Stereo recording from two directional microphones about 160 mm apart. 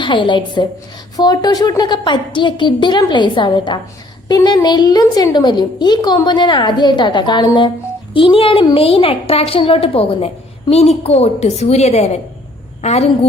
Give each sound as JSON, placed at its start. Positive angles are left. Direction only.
{"t": 0.0, "sound": "a woman's voice", "side_deg": 30}